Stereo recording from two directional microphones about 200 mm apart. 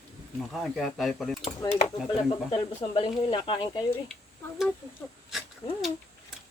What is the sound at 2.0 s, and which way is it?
Speech, 25° left (ahead or behind).